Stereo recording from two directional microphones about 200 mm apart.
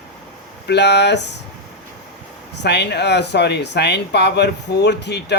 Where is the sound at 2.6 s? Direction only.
55° left (ahead or behind).